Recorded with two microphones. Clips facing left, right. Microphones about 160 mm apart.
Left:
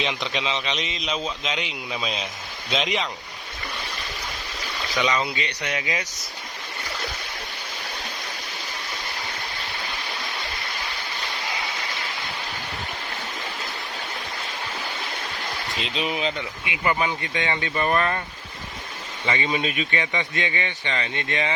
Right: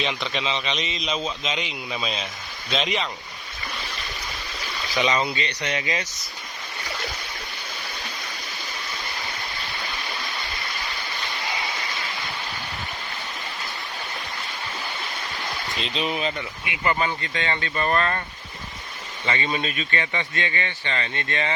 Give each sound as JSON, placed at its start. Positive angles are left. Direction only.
{"t": 0.0, "sound": "a man's voice", "side_deg": 15}
{"t": 0.8, "sound": "a man's voice", "side_deg": 60}
{"t": 1.0, "sound": "a man's voice", "side_deg": 10}
{"t": 4.9, "sound": "speech", "side_deg": -25}
{"t": 5.2, "sound": "a man's voice", "side_deg": 10}
{"t": 16.0, "sound": "a man's voice", "side_deg": 10}
{"t": 19.2, "sound": "a man's voice", "side_deg": 15}